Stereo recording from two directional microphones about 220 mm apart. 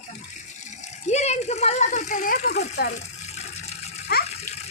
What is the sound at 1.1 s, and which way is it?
Speech, 30° left (ahead or behind).